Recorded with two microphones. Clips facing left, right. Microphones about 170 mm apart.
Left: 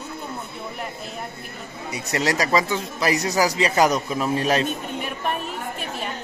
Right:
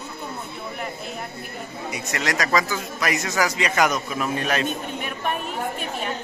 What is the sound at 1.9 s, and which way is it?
Speech, 30° left (ahead or behind).